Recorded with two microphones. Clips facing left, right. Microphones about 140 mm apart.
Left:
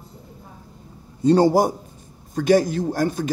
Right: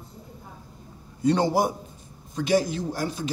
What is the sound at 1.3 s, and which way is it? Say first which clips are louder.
A man's voice: left 6 dB; 40° left (ahead or behind).